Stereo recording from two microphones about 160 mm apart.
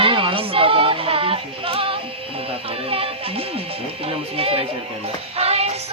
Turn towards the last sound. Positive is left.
turn(degrees=-40)  # may be behind; listen again after turning